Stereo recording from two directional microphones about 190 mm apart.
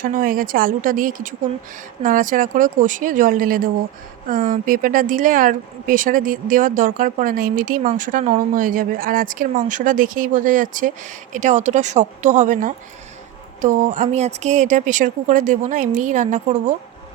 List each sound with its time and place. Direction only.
0.0 s a woman's voice: 50° right (ahead or behind)